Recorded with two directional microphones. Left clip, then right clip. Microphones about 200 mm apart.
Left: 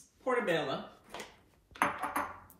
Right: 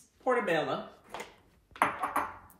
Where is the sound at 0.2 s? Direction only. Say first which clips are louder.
Right 3 dB; 15° right (ahead or behind).